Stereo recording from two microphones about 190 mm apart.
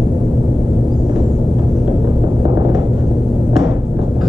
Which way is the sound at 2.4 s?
20° right (ahead or behind).